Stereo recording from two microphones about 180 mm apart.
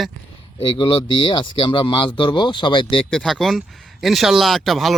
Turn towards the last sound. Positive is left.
turn(degrees=0)  # may be behind; listen again after turning